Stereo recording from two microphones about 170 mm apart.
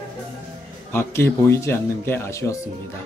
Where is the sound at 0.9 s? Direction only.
15° left (ahead or behind).